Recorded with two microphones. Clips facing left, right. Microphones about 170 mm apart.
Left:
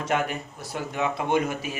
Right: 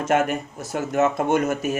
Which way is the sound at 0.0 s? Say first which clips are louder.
Right 6 dB; 45° right (ahead or behind).